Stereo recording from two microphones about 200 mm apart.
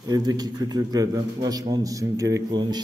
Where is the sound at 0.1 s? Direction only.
20° right (ahead or behind).